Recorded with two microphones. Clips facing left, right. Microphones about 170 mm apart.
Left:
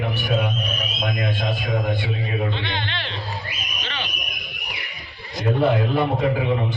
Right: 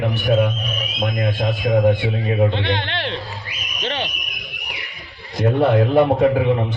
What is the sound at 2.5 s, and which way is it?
Speech, 70° right (ahead or behind).